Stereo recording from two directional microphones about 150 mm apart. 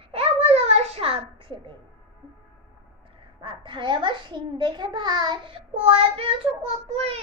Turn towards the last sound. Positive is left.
turn(degrees=-40)  # may be behind; listen again after turning